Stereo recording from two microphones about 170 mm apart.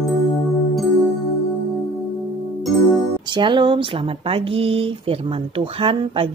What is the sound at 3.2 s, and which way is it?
Speech, 25° right (ahead or behind).